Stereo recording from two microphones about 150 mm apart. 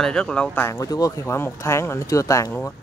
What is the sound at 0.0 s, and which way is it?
Speech, 5° left (ahead or behind).